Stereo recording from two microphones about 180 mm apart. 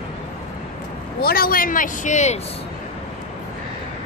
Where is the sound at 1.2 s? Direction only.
55° left (ahead or behind).